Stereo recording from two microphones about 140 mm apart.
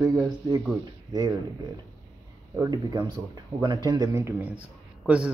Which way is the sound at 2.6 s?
25° right (ahead or behind).